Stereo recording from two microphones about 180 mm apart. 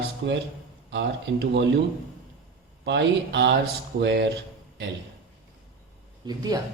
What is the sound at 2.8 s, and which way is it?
Speech, 80° right.